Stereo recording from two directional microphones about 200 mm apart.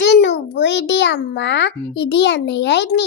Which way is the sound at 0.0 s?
60° left (ahead or behind).